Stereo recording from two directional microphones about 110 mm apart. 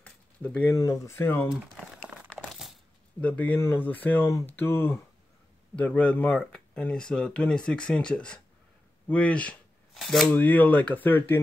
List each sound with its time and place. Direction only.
0.0 s a sound: 10° left (ahead or behind)
0.7 s speech: 30° left (ahead or behind)
1.8 s crumpling: 10° right (ahead or behind)
3.2 s speech: 15° left (ahead or behind)
9.9 s speech: centre (ahead or behind)
10.3 s speech: 15° left (ahead or behind)